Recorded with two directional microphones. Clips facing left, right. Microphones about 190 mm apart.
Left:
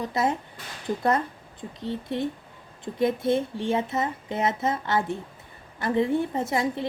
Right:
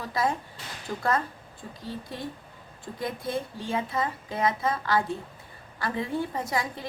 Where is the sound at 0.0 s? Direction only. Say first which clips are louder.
Left 2 dB; 20° left (ahead or behind).